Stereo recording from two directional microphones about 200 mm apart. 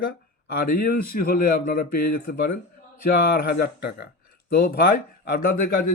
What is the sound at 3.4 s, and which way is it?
Speech, 45° left (ahead or behind).